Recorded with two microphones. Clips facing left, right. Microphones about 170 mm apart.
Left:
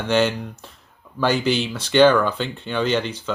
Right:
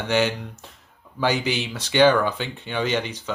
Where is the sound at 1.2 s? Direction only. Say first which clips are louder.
Left 3 dB; 15° right (ahead or behind).